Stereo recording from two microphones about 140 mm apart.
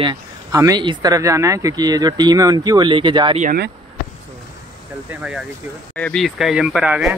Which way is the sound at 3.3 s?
65° right (ahead or behind).